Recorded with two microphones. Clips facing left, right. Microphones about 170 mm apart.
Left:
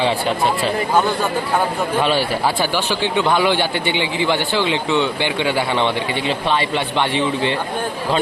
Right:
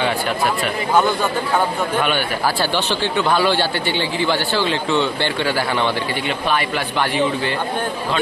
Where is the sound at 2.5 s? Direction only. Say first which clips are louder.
Even; 15° left (ahead or behind).